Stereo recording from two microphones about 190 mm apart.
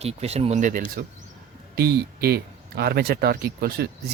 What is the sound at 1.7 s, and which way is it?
Speech, 55° right (ahead or behind).